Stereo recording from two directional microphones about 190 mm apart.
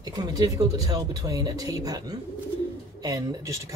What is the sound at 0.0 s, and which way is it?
Speech, 20° right (ahead or behind).